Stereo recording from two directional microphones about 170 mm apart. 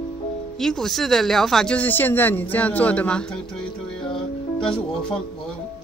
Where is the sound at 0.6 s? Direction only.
Centre (ahead or behind).